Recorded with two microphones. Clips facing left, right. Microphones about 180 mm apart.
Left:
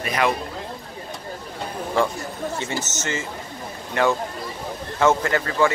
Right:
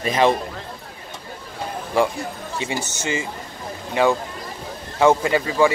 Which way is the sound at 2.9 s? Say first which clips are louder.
Right 2 dB; 15° right (ahead or behind).